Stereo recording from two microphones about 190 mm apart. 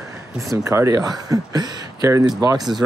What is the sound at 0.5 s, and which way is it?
Speech, 15° right (ahead or behind).